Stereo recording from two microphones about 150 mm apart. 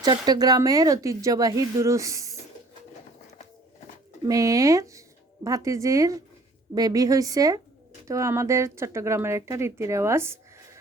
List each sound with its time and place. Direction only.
0.0 s speech: 25° right (ahead or behind)
4.3 s speech: 20° right (ahead or behind)